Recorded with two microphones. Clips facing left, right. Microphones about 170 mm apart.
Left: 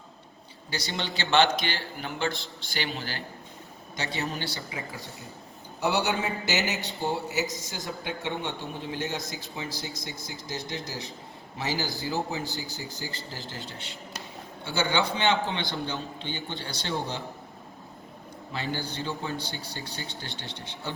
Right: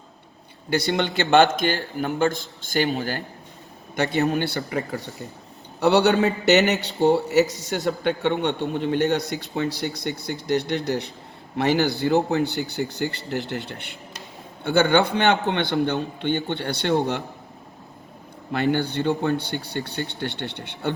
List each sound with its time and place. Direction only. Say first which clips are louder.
0.7 s a man's voice: right 11 dB; 60° right (ahead or behind)
3.9 s a man's voice: right 11 dB; 60° right (ahead or behind)
18.5 s a man's voice: right 11 dB; 60° right (ahead or behind)